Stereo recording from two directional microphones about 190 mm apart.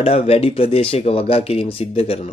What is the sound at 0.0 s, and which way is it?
Speech, 30° left (ahead or behind).